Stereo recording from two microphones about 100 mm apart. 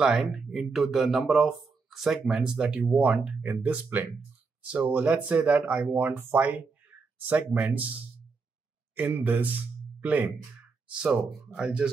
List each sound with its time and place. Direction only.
0.2 s speech: centre (ahead or behind); by 7.7 s 15° right (ahead or behind)
8.9 s speech: 15° right (ahead or behind)